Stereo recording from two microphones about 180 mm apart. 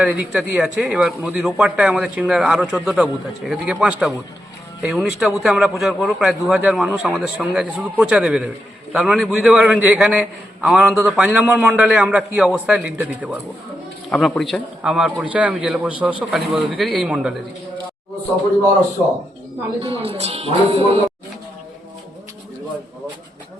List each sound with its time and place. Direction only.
0.0 s a man's voice: 5° right (ahead or behind)
14.1 s a man's voice: centre (ahead or behind)
19.8 s speech: 30° right (ahead or behind)